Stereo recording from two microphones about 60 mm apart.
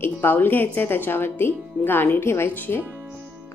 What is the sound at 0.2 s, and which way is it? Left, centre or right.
Speech, left.